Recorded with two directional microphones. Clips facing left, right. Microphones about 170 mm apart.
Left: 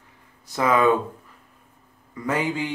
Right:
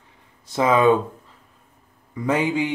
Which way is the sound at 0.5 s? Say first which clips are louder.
Right 3 dB; 20° right (ahead or behind).